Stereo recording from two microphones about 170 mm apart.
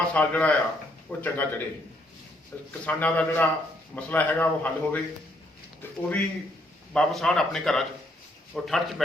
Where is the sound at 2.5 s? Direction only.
10° left (ahead or behind).